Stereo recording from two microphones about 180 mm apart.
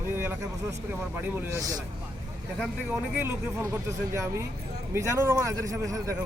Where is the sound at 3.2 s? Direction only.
15° right (ahead or behind).